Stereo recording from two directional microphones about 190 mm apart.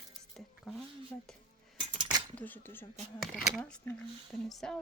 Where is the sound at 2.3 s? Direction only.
10° left (ahead or behind).